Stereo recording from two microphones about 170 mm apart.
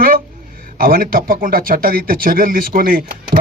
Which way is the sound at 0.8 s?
55° right (ahead or behind).